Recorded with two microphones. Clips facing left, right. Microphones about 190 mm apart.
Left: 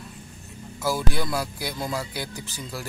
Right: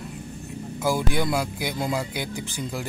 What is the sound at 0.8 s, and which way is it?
Speech, 15° right (ahead or behind).